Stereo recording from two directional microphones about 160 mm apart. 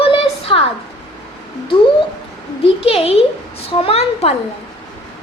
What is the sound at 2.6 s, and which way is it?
A child's voice, 35° left (ahead or behind).